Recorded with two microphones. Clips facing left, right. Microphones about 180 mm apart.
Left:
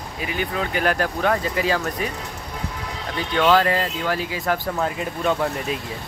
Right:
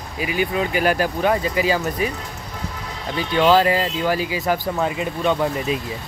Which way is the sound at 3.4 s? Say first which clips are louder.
Right 2 dB; 5° right (ahead or behind).